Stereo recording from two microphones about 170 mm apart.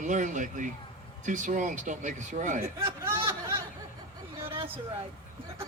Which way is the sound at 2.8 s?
15° right (ahead or behind).